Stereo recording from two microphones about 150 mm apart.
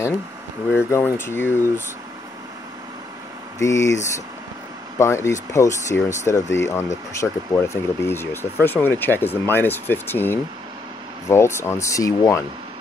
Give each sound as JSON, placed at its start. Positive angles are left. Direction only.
{"t": 0.7, "sound": "speech", "side_deg": 15}
{"t": 3.5, "sound": "speech", "side_deg": 20}